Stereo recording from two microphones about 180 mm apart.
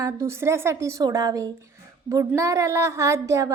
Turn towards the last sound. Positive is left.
turn(degrees=-15)  # may be behind; listen again after turning